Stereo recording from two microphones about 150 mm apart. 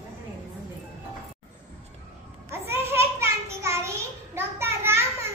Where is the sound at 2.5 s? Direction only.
15° right (ahead or behind).